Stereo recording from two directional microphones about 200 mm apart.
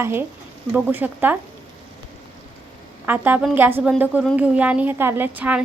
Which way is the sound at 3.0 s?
10° right (ahead or behind).